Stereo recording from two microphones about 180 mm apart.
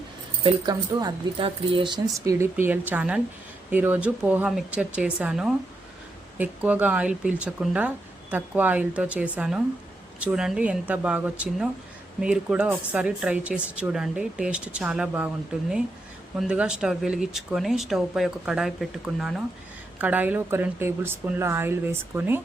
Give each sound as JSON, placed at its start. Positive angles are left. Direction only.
{"t": 0.4, "sound": "speech", "side_deg": -25}
{"t": 2.1, "sound": "speech", "side_deg": -15}
{"t": 16.4, "sound": "speech", "side_deg": -5}